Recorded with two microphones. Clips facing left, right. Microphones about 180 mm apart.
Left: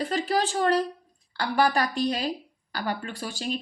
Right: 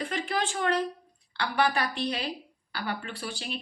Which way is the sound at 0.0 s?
40° left (ahead or behind).